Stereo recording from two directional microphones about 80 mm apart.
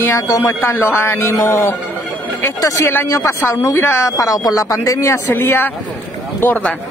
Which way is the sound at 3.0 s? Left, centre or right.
Left.